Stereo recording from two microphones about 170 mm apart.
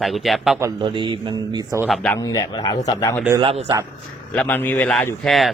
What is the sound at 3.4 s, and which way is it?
Speech, 35° right (ahead or behind).